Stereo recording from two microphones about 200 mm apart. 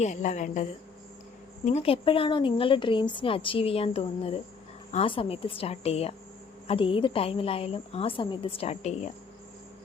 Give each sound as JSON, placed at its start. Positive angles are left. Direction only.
{"t": 0.0, "sound": "a woman's voice", "side_deg": 35}